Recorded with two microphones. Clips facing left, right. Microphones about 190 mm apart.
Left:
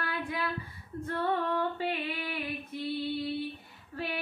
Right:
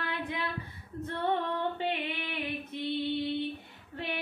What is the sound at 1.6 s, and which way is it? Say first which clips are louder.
Female singing: even; 25° right (ahead or behind).